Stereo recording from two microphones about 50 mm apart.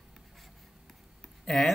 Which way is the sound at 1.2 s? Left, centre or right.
Centre.